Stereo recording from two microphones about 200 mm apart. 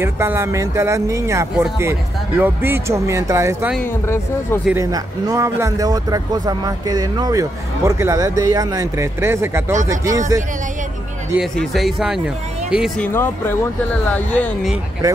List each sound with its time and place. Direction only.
0.0 s speech: 10° right (ahead or behind)
3.7 s speech: 10° left (ahead or behind)
4.6 s speech: 15° right (ahead or behind)
11.3 s speech: centre (ahead or behind)